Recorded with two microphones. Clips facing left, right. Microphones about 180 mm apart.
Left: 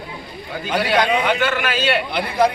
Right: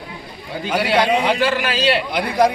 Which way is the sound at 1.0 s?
35° right (ahead or behind).